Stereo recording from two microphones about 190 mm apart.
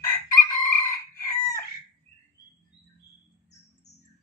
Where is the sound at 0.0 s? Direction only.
15° left (ahead or behind).